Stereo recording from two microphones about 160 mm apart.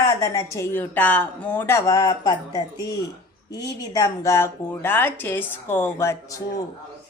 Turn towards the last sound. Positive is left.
turn(degrees=15)  # may be behind; listen again after turning